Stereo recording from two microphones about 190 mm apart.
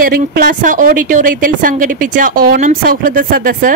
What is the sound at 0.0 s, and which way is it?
A woman's voice, 45° right (ahead or behind).